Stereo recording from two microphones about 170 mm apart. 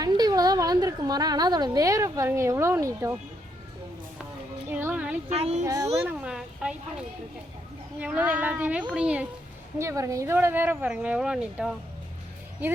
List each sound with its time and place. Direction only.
0.0 s a woman's voice: 25° right (ahead or behind)
4.7 s music: 10° right (ahead or behind)
5.3 s speech: 40° right (ahead or behind)
5.6 s a child's voice: 20° right (ahead or behind)
6.0 s a sound: 10° right (ahead or behind)
7.9 s speech: 10° right (ahead or behind)
9.7 s speech: 15° right (ahead or behind)